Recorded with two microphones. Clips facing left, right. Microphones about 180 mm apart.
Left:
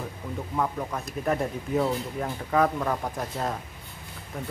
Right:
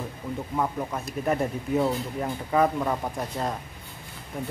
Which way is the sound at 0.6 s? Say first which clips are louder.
Even; 5° right (ahead or behind).